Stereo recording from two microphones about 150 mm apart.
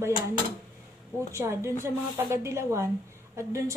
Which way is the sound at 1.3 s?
20° right (ahead or behind).